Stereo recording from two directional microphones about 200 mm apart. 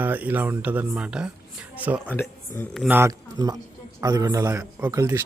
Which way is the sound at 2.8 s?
10° right (ahead or behind).